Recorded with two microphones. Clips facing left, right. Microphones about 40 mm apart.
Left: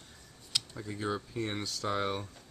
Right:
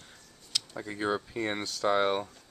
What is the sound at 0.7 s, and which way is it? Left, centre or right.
Speech, right.